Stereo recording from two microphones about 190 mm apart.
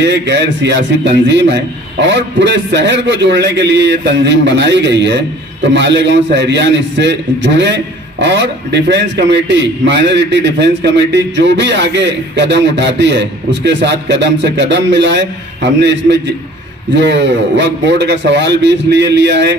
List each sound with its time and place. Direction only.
0.0 s a man's voice: 65° right (ahead or behind)